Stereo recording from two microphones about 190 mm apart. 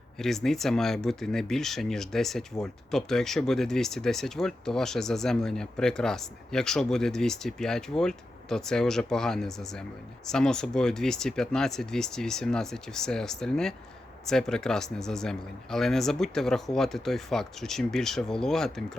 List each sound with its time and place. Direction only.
0.2 s speech: centre (ahead or behind)